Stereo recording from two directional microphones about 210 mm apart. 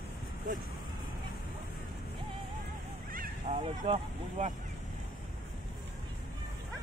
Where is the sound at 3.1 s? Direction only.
35° right (ahead or behind).